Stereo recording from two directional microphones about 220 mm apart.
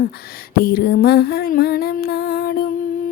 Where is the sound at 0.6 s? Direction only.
45° left (ahead or behind).